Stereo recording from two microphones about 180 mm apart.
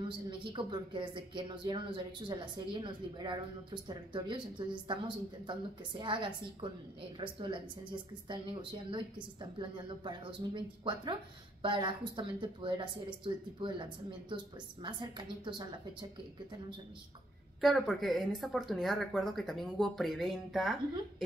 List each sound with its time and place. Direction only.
0.3 s a woman's voice: 25° right (ahead or behind)
17.6 s speech: centre (ahead or behind)